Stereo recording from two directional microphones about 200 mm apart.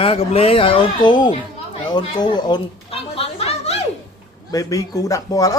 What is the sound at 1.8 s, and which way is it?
Chatter, 20° left (ahead or behind).